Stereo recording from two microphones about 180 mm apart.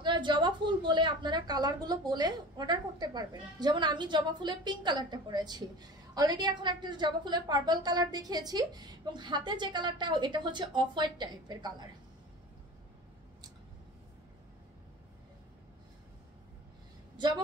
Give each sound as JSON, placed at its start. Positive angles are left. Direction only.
{"t": 0.0, "sound": "a woman's voice", "side_deg": -25}